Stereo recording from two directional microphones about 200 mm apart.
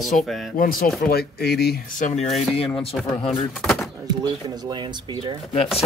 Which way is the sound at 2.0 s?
35° left (ahead or behind).